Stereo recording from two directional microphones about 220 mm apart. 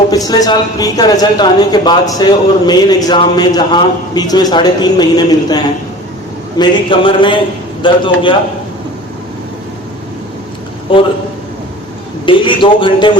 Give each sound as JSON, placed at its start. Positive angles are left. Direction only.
{"t": 0.1, "sound": "a man's voice", "side_deg": 15}
{"t": 10.9, "sound": "a man's voice", "side_deg": 25}
{"t": 12.2, "sound": "a man's voice", "side_deg": 20}